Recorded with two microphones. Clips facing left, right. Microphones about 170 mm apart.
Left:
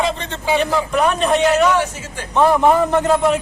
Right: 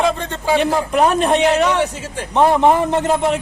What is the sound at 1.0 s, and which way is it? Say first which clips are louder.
A man's voice: right 2 dB; 30° right (ahead or behind).